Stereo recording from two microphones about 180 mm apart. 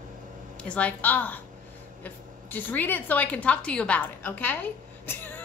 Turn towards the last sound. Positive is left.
turn(degrees=10)  # may be behind; listen again after turning